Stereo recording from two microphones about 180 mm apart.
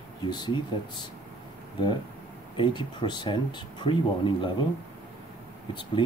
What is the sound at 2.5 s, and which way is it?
Speech, 25° left (ahead or behind).